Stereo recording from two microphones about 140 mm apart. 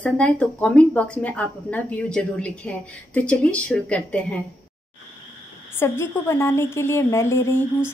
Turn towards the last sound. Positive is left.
turn(degrees=20)  # may be behind; listen again after turning